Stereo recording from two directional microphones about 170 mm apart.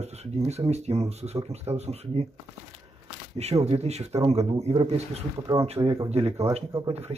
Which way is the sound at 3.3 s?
40° right (ahead or behind).